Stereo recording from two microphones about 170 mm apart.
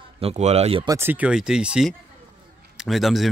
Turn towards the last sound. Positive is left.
turn(degrees=0)  # may be behind; listen again after turning